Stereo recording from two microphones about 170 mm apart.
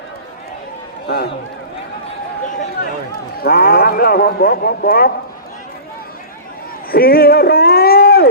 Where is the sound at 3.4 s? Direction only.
60° left (ahead or behind).